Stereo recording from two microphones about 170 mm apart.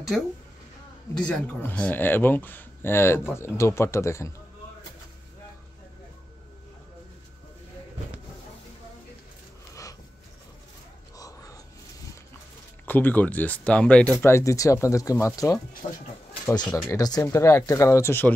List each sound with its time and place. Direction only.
0.1 s a woman's voice: centre (ahead or behind); by 4.3 s 15° left (ahead or behind)
11.1 s a sound: 20° left (ahead or behind)
12.8 s speech: 10° left (ahead or behind)